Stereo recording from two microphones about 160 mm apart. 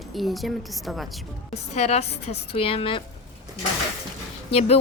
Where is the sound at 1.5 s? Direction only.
45° left (ahead or behind).